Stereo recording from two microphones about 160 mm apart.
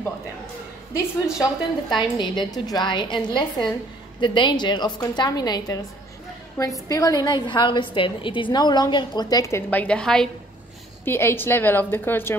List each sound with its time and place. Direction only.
1.2 s a woman's voice: 25° left (ahead or behind); by 10.3 s 5° left (ahead or behind)
11.1 s a woman's voice: 15° left (ahead or behind)